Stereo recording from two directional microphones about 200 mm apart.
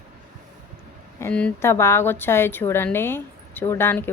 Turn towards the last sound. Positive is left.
turn(degrees=10)  # may be behind; listen again after turning